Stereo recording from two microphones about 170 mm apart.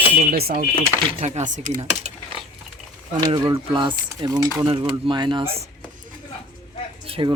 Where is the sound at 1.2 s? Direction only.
40° right (ahead or behind).